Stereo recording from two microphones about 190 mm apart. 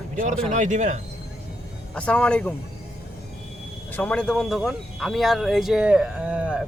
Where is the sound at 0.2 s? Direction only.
40° right (ahead or behind).